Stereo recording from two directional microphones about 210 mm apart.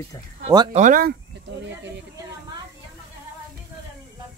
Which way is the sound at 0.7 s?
40° right (ahead or behind).